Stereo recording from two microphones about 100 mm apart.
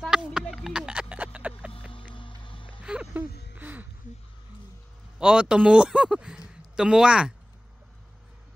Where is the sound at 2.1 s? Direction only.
55° left (ahead or behind).